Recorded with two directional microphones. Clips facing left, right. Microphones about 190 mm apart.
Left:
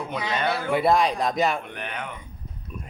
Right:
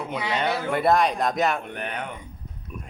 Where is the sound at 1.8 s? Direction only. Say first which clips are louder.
Right 2 dB; 40° right (ahead or behind).